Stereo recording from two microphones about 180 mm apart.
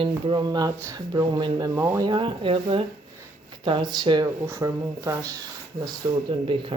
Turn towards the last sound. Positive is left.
turn(degrees=-25)  # may be behind; listen again after turning